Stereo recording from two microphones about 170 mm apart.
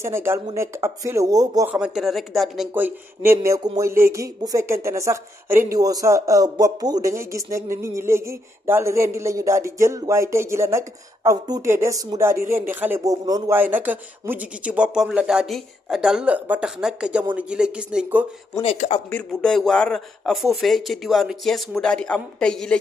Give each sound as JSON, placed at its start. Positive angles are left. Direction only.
{"t": 0.0, "sound": "speech", "side_deg": -15}
{"t": 1.7, "sound": "speech", "side_deg": -5}
{"t": 3.3, "sound": "speech", "side_deg": -20}
{"t": 13.6, "sound": "speech", "side_deg": -10}
{"t": 18.6, "sound": "speech", "side_deg": 35}
{"t": 19.0, "sound": "speech", "side_deg": 5}